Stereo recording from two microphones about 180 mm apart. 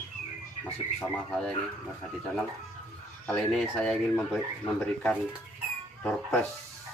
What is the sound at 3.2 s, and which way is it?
Speech, 5° left (ahead or behind).